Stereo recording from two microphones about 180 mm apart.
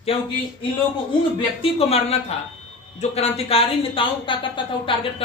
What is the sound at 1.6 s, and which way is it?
Speech, 35° left (ahead or behind).